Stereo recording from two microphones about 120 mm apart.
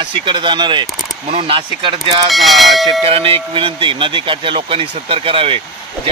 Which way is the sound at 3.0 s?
50° right (ahead or behind).